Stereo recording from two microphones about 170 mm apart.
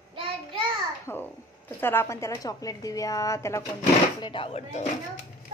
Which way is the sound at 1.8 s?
15° left (ahead or behind).